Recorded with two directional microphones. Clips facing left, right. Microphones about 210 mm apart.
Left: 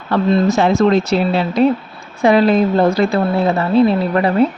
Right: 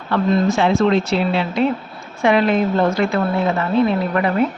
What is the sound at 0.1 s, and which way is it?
A woman's voice, 40° left (ahead or behind).